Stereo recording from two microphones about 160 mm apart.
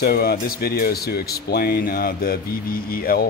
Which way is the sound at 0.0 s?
75° left (ahead or behind).